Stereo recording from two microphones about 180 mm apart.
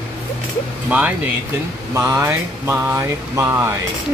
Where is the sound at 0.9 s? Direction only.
10° right (ahead or behind).